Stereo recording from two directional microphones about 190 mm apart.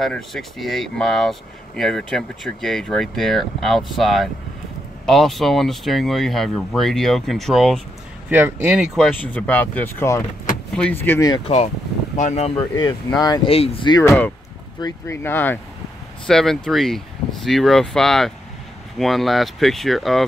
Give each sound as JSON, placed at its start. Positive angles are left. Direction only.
{"t": 0.0, "sound": "speech", "side_deg": 0}
{"t": 8.3, "sound": "speech", "side_deg": -10}
{"t": 11.4, "sound": "speech", "side_deg": 35}
{"t": 12.5, "sound": "speech", "side_deg": 20}